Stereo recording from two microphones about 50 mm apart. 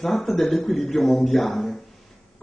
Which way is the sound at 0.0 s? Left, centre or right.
Centre.